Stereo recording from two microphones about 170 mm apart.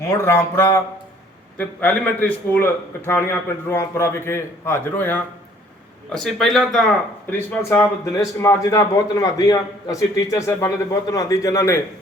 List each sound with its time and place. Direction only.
0.2 s a man's voice: 15° left (ahead or behind)
7.3 s a man's voice: 10° left (ahead or behind)